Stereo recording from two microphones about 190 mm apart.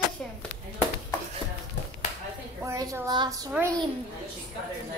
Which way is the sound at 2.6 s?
15° right (ahead or behind).